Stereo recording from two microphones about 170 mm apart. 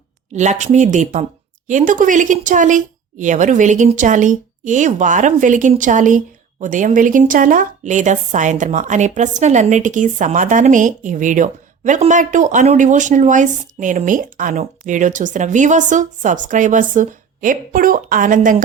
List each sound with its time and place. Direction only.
0.3 s speech: 45° right (ahead or behind)